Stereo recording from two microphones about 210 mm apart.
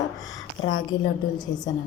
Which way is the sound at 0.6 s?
30° left (ahead or behind).